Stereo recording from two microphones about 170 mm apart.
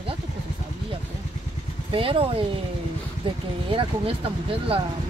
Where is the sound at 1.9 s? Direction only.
30° right (ahead or behind).